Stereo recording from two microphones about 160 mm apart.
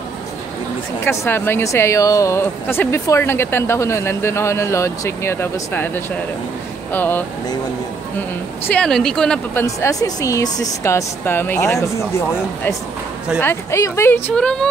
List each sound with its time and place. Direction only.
1.0 s speech: 15° left (ahead or behind)
8.6 s speech: 5° left (ahead or behind)
13.4 s speech: 15° left (ahead or behind)